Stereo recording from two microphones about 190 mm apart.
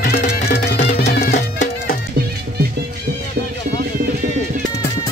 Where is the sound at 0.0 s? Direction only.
55° left (ahead or behind).